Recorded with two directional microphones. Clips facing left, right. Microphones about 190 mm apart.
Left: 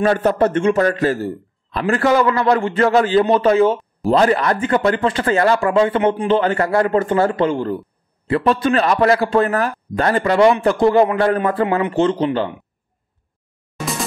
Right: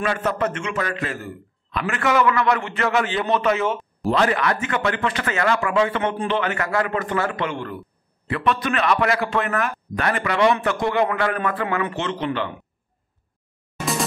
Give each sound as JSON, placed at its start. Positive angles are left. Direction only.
{"t": 0.0, "sound": "a man's voice", "side_deg": 35}